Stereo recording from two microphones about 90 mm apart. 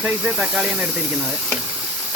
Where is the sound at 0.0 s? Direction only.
5° right (ahead or behind).